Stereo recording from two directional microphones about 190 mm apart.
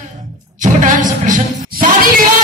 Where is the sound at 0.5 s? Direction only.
40° right (ahead or behind).